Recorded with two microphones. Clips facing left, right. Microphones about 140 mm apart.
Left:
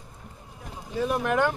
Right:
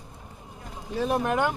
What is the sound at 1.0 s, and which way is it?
Speech, 30° right (ahead or behind).